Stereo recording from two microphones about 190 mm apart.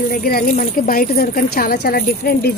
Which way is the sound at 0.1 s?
50° left (ahead or behind).